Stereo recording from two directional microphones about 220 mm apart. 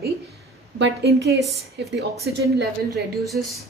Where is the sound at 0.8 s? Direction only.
50° right (ahead or behind).